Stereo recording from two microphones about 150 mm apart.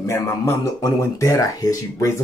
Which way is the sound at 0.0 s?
20° left (ahead or behind).